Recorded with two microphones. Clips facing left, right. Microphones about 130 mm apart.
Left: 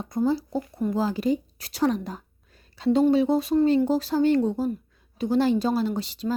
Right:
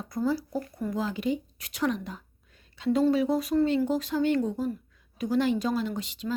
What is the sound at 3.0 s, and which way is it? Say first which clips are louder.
A woman's voice: left 4 dB; 25° left (ahead or behind).